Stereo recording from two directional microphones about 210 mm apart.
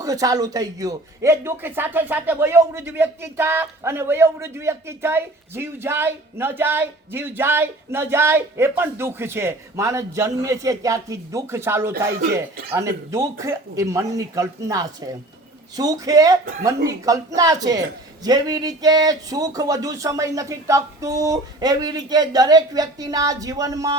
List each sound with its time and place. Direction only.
0.0 s a man's voice: 15° right (ahead or behind)